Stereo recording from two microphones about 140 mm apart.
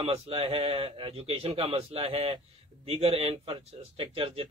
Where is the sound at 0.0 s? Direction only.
40° right (ahead or behind).